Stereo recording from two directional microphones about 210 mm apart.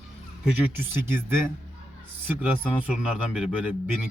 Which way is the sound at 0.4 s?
10° right (ahead or behind).